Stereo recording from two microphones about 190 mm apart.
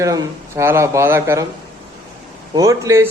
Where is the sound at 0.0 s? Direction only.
15° right (ahead or behind).